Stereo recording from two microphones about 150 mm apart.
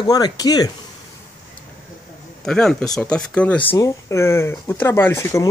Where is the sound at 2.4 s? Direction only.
5° left (ahead or behind).